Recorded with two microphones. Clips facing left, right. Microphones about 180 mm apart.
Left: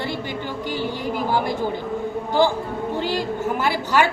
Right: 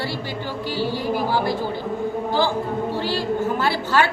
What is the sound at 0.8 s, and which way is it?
Speech, 20° left (ahead or behind).